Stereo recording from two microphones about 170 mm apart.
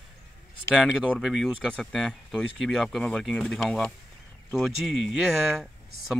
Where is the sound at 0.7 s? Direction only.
5° right (ahead or behind).